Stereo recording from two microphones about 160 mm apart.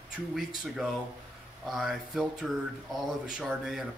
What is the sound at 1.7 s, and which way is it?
Speech, centre (ahead or behind).